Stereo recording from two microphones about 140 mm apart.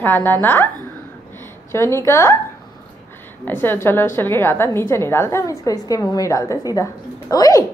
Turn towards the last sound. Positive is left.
turn(degrees=25)  # may be behind; listen again after turning